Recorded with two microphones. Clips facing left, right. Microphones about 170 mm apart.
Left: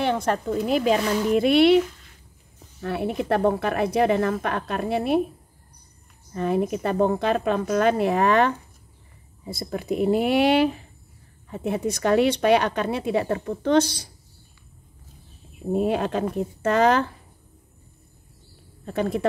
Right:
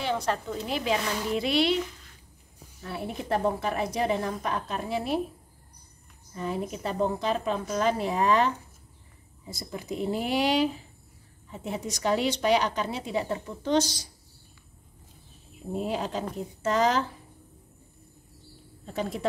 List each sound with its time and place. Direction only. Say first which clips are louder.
0.0 s a woman's voice: left 5 dB; 55° left (ahead or behind)
2.8 s a woman's voice: left 8 dB; 65° left (ahead or behind)
6.3 s a woman's voice: left 8 dB; 60° left (ahead or behind)
15.7 s a woman's voice: left 7 dB; 60° left (ahead or behind)
18.9 s a woman's voice: left 7 dB; 60° left (ahead or behind)